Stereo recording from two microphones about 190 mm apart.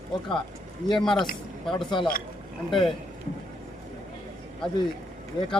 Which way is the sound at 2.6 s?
Centre (ahead or behind).